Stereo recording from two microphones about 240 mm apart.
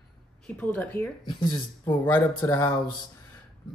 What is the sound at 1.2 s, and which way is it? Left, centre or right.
Speech, centre.